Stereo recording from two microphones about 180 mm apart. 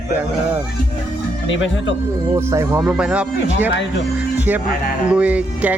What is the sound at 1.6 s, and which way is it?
Speech, 90° left.